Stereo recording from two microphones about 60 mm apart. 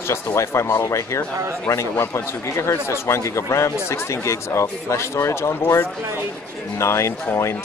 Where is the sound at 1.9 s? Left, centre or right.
Left.